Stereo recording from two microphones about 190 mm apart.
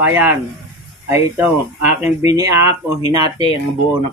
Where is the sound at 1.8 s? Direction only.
35° left (ahead or behind).